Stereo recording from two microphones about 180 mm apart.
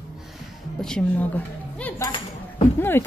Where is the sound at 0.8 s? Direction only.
5° left (ahead or behind).